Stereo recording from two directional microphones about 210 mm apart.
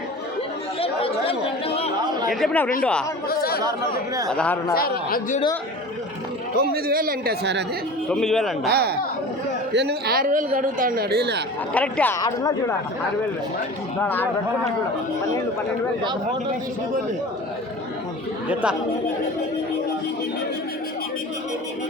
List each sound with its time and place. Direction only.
0.8 s chatter: 25° left (ahead or behind)
2.3 s a man's voice: 5° left (ahead or behind)
3.2 s chatter: 45° left (ahead or behind)
4.3 s a man's voice: 5° left (ahead or behind)
4.7 s a man's voice: 45° left (ahead or behind)
6.6 s a man's voice: 45° right (ahead or behind)
8.1 s a man's voice: 5° left (ahead or behind)
8.6 s a man's voice: 50° right (ahead or behind)
11.7 s speech: 5° left (ahead or behind)
14.0 s speech: 10° left (ahead or behind)
18.4 s a man's voice: 5° right (ahead or behind)